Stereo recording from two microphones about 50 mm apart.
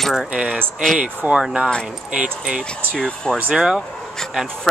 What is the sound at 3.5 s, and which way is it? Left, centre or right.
Speech, centre.